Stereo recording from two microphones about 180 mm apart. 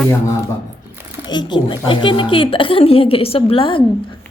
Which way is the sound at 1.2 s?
25° left (ahead or behind).